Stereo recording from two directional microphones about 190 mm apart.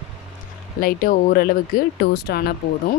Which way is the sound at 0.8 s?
50° left (ahead or behind).